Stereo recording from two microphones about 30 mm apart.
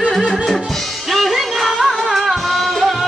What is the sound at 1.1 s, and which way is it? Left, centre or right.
Music, centre.